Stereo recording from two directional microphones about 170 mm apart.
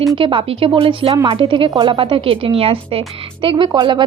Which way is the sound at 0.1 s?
30° right (ahead or behind).